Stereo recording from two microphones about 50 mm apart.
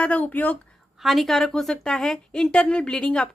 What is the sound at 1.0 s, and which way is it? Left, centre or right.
A woman's voice, centre.